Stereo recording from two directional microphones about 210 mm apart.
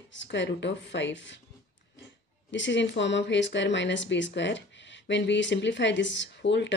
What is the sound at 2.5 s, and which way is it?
Speech, 60° left (ahead or behind).